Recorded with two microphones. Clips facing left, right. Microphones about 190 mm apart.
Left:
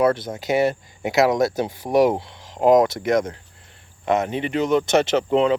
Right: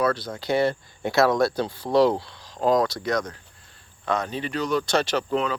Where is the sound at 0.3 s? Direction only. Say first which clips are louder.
Left 3 dB; 15° left (ahead or behind).